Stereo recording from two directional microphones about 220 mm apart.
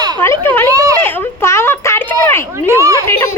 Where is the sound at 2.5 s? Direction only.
10° right (ahead or behind).